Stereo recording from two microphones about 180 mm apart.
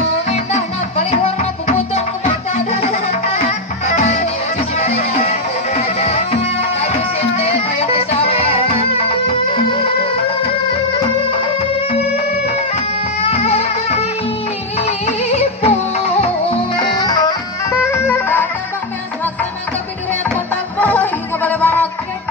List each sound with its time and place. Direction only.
0.3 s music: 40° left (ahead or behind)
11.9 s music: 35° left (ahead or behind); by 18.5 s 10° left (ahead or behind)
20.8 s music: 10° left (ahead or behind)